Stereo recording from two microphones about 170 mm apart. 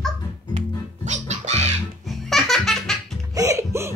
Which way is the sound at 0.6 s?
40° right (ahead or behind).